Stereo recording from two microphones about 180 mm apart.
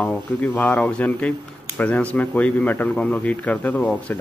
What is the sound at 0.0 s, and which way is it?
Speech, 10° left (ahead or behind).